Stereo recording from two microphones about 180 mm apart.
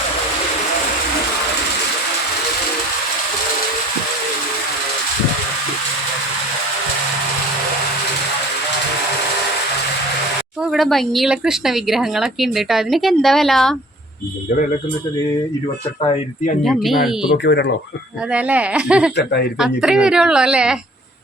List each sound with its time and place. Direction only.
10.6 s speech: centre (ahead or behind)
16.6 s speech: centre (ahead or behind)
17.3 s speech: 70° left (ahead or behind)
18.3 s speech: 5° right (ahead or behind)
19.1 s speech: 65° left (ahead or behind)
19.8 s speech: 5° right (ahead or behind)